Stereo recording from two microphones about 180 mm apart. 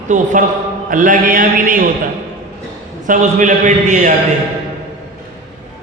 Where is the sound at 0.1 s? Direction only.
45° right (ahead or behind).